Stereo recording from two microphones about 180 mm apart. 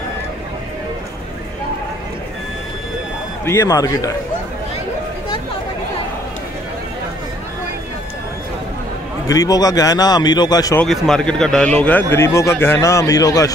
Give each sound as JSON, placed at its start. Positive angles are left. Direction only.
{"t": 3.4, "sound": "a man's voice", "side_deg": 15}
{"t": 9.3, "sound": "a man's voice", "side_deg": 20}
{"t": 10.8, "sound": "a man's voice", "side_deg": 5}